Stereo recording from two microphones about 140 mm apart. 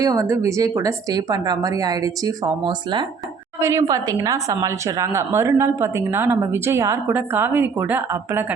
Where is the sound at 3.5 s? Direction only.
20° right (ahead or behind).